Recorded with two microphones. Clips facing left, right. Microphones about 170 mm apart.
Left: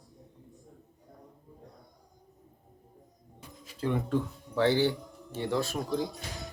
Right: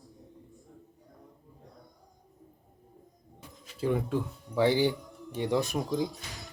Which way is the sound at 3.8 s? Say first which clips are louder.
Even; 10° right (ahead or behind).